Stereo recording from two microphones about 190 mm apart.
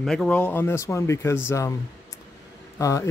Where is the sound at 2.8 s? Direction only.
15° left (ahead or behind).